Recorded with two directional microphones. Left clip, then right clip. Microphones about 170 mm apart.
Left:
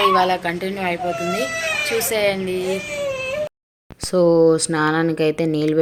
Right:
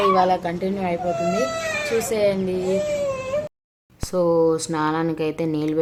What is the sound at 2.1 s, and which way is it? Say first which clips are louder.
Speech: left 1 dB; 5° right (ahead or behind).